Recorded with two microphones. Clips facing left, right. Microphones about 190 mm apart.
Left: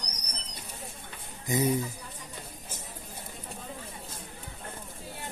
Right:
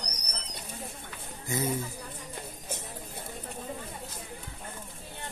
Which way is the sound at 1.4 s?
15° left (ahead or behind).